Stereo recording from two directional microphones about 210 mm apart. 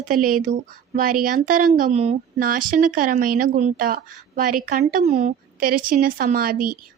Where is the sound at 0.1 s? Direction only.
40° right (ahead or behind).